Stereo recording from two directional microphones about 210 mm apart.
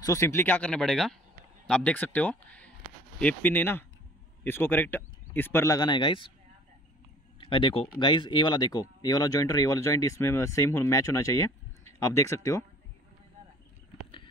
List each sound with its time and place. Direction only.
0.0 s speech: 15° left (ahead or behind)
7.3 s speech: 25° left (ahead or behind)